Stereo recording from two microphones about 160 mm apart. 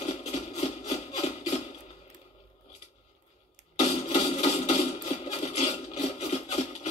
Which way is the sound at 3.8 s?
40° left (ahead or behind).